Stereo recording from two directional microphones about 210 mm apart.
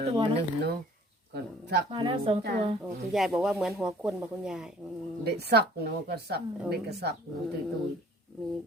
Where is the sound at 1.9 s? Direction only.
25° right (ahead or behind).